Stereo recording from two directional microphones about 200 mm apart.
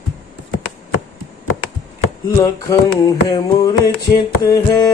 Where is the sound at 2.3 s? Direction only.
15° left (ahead or behind).